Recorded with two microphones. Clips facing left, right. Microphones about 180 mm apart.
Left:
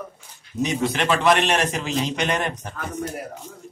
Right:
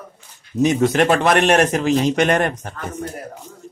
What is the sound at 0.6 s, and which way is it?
A man's voice, 45° right (ahead or behind).